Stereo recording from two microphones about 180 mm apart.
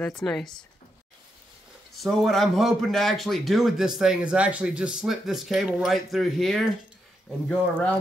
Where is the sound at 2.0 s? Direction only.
Centre (ahead or behind).